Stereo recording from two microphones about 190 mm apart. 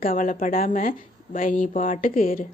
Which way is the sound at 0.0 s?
45° left (ahead or behind).